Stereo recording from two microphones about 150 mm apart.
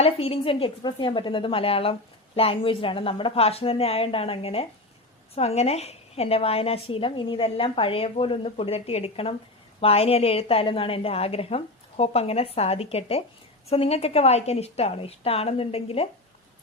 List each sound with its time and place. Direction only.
0.0 s a woman's voice: 40° left (ahead or behind)